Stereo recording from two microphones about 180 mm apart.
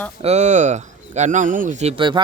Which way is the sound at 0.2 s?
40° right (ahead or behind).